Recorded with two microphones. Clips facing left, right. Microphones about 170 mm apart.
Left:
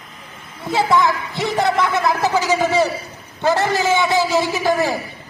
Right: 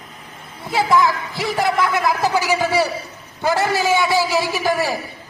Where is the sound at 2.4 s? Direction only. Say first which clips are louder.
Left 2 dB; 10° right (ahead or behind).